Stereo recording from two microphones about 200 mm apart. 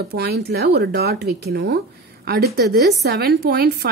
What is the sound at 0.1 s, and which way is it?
A woman's voice, 55° right (ahead or behind).